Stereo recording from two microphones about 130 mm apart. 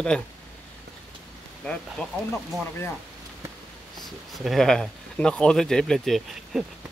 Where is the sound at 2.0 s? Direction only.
10° left (ahead or behind).